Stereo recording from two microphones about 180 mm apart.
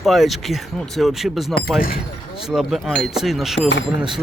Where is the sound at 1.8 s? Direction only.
55° left (ahead or behind).